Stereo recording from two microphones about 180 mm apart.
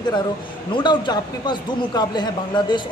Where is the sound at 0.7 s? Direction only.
25° left (ahead or behind).